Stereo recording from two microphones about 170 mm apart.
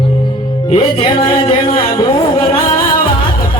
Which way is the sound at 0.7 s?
35° left (ahead or behind).